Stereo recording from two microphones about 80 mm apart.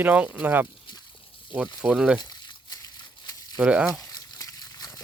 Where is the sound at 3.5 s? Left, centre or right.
Centre.